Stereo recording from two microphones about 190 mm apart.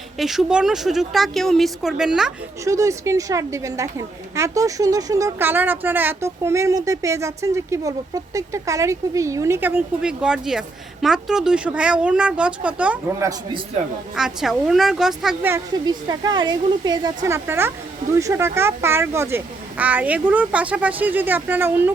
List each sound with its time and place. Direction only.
0.2 s speech: centre (ahead or behind)
2.6 s a woman's voice: 15° right (ahead or behind)
14.2 s speech: centre (ahead or behind)
15.5 s a woman's voice: 20° right (ahead or behind)